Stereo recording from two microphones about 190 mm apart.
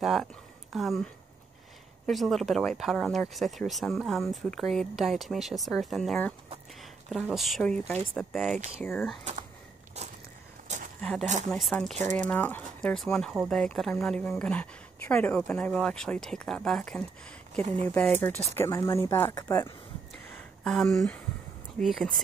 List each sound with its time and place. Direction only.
0.0 s speech: centre (ahead or behind)
9.9 s walk: 35° right (ahead or behind)
11.0 s speech: 5° left (ahead or behind)
11.9 s speech: 40° right (ahead or behind)
12.3 s speech: 10° left (ahead or behind)
20.6 s speech: centre (ahead or behind)